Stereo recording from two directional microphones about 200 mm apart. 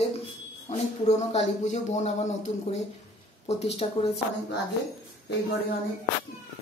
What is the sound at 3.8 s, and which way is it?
Speech, 30° left (ahead or behind).